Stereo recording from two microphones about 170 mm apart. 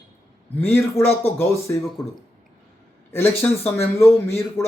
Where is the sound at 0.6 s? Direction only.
15° left (ahead or behind).